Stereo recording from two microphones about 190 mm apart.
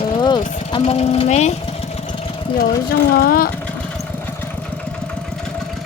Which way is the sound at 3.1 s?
50° left (ahead or behind).